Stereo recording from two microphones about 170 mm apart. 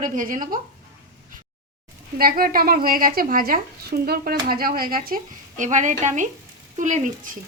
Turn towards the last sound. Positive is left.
turn(degrees=-50)  # may be behind; listen again after turning